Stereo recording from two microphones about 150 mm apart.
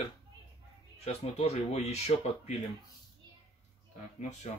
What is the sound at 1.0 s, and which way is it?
Speech, 45° left (ahead or behind).